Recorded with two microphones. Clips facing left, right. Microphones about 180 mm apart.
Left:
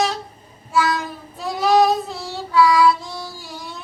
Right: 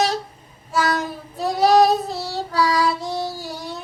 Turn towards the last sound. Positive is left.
turn(degrees=-40)  # may be behind; listen again after turning